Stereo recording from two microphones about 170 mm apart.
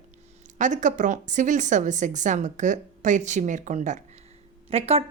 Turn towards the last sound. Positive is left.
turn(degrees=-35)  # may be behind; listen again after turning